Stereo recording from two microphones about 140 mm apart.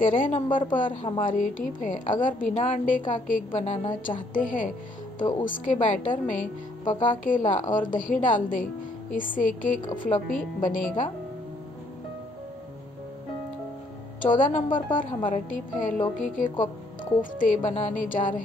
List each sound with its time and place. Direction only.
0.0 s a woman's voice: 75° left (ahead or behind)
0.8 s a woman's voice: 35° left (ahead or behind)
1.2 s a woman's voice: 75° left (ahead or behind)
4.3 s a woman's voice: 75° left (ahead or behind)
14.2 s a woman's voice: 70° left (ahead or behind)